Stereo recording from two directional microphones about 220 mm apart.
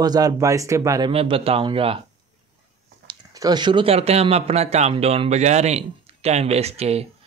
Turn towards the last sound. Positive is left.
turn(degrees=-30)  # may be behind; listen again after turning